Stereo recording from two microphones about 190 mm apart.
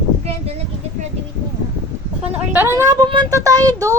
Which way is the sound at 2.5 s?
10° right (ahead or behind).